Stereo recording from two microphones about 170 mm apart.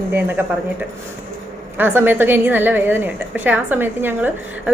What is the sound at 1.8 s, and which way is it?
A woman's voice, 10° right (ahead or behind).